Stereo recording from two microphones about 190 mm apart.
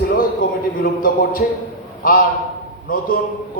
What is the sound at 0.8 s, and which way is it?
Speech, 50° left (ahead or behind).